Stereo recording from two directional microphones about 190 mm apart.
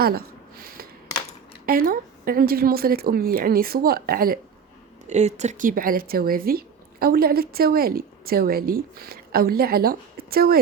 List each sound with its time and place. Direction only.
0.0 s a sound: 55° right (ahead or behind)
1.6 s a woman's voice: 50° right (ahead or behind)
5.0 s a woman's voice: 35° right (ahead or behind); by 10.6 s 55° right (ahead or behind)